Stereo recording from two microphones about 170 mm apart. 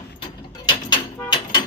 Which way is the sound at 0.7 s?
25° left (ahead or behind).